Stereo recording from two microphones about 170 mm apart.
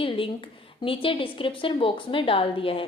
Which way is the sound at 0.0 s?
30° left (ahead or behind).